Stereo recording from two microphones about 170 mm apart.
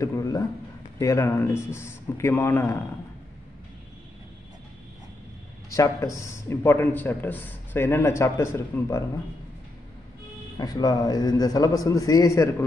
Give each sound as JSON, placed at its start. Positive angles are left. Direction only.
{"t": 0.0, "sound": "a sound", "side_deg": 20}
{"t": 0.9, "sound": "speech", "side_deg": 15}
{"t": 5.7, "sound": "speech", "side_deg": 20}
{"t": 10.6, "sound": "a man's voice", "side_deg": 20}